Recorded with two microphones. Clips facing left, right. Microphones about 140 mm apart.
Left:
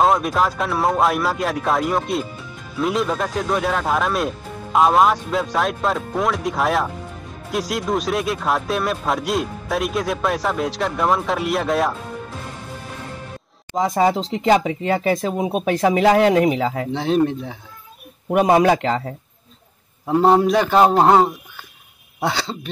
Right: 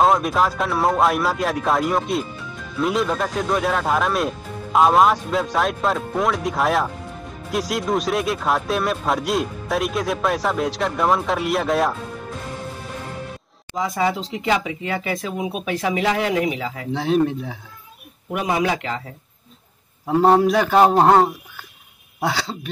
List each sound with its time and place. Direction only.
0.0 s speech: centre (ahead or behind)
13.7 s speech: 40° left (ahead or behind)
16.9 s speech: 5° right (ahead or behind)
18.3 s a man's voice: 45° left (ahead or behind)
20.1 s speech: centre (ahead or behind)